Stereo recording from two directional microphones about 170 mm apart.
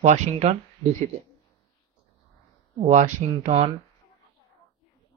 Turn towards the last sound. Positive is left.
turn(degrees=-45)  # may be behind; listen again after turning